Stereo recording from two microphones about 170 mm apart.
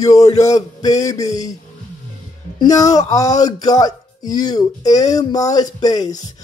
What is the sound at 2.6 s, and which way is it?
Speech, 20° left (ahead or behind).